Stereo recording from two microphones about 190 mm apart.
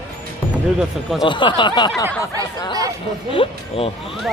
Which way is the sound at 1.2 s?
25° left (ahead or behind).